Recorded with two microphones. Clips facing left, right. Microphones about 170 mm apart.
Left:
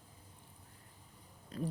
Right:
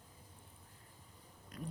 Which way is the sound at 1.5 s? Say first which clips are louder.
Left 8 dB; 30° left (ahead or behind).